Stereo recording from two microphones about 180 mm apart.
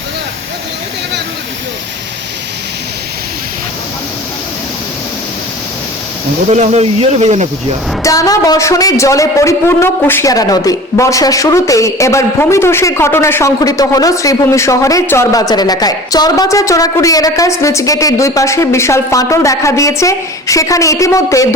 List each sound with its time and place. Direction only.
6.5 s speech: 40° right (ahead or behind)
8.0 s a woman's voice: 20° left (ahead or behind)